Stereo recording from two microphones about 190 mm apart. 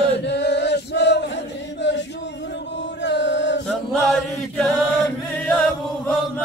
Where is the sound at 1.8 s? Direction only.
70° left (ahead or behind).